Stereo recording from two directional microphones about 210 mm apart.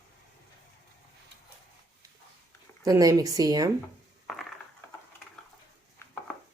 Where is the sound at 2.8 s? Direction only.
15° right (ahead or behind).